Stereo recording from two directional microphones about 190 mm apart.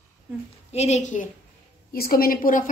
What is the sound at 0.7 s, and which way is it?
Speech, 35° left (ahead or behind).